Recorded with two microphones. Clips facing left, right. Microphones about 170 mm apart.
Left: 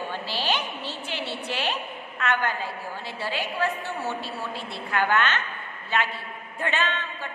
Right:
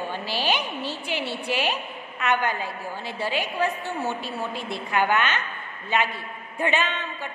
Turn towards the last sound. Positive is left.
turn(degrees=-15)  # may be behind; listen again after turning